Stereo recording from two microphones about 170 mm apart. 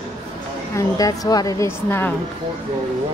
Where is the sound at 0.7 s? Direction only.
20° left (ahead or behind).